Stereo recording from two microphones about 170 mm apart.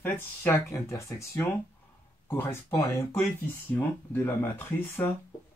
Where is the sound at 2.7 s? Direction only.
15° left (ahead or behind).